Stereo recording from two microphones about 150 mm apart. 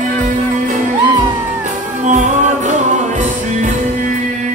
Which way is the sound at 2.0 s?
55° right (ahead or behind).